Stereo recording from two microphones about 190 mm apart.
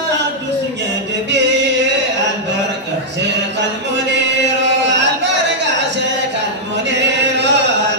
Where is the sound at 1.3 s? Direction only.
65° right (ahead or behind).